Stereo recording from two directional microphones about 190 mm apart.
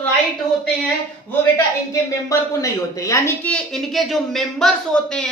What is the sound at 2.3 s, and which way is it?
A woman's voice, 15° left (ahead or behind).